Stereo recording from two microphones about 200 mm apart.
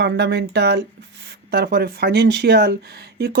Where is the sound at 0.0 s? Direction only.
55° right (ahead or behind).